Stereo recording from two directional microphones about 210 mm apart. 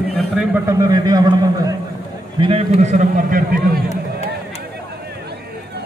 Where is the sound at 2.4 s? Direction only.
30° right (ahead or behind).